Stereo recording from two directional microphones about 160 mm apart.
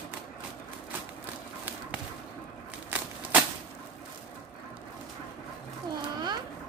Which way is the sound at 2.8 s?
10° right (ahead or behind).